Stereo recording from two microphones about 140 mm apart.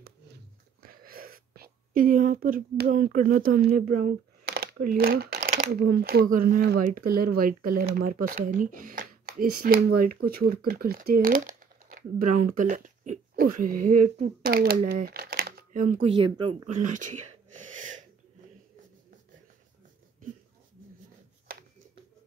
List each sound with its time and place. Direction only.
0.8 s speech: 90° right
7.1 s speech: 90° right
14.9 s typing: 90° right; by 16.0 s 75° right (ahead or behind)
16.3 s speech: 30° right (ahead or behind)
16.8 s throat clearing: 65° right (ahead or behind)
21.5 s a sound: 90° right